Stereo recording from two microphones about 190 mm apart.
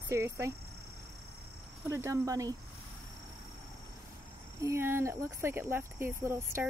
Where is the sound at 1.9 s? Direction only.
15° right (ahead or behind).